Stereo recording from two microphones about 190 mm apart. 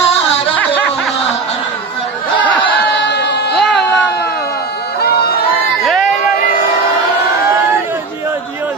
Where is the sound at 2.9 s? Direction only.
65° left (ahead or behind).